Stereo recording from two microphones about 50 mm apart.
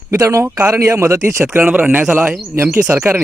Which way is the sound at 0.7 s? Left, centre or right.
Right.